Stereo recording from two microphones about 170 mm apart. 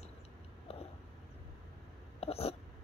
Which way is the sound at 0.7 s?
35° left (ahead or behind).